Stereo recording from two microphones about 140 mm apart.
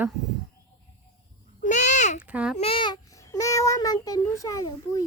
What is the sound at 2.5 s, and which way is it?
A woman's voice, 40° left (ahead or behind).